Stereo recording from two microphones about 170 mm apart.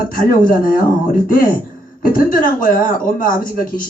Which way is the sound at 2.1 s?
55° left (ahead or behind).